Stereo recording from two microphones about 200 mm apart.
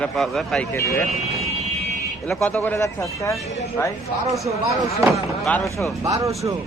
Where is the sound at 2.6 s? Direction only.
15° left (ahead or behind).